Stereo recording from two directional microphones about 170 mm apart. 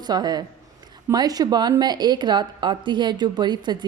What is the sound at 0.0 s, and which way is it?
A woman's voice, 25° right (ahead or behind).